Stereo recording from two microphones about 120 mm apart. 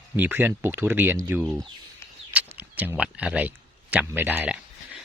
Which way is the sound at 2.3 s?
15° right (ahead or behind).